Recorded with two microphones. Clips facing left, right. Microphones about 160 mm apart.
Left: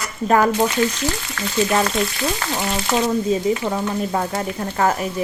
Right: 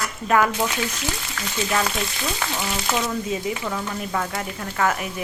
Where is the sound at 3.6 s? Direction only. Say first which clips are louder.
Left 6 dB; 35° left (ahead or behind).